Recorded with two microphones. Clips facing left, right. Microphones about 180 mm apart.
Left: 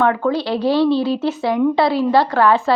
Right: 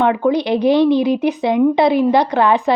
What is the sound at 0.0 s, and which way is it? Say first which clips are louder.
A woman's voice: right 2 dB; 20° right (ahead or behind).